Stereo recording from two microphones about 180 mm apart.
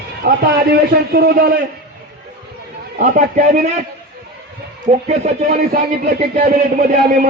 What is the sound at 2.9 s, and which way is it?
Speech, 45° right (ahead or behind).